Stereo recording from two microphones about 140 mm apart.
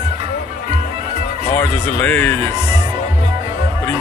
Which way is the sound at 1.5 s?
15° left (ahead or behind).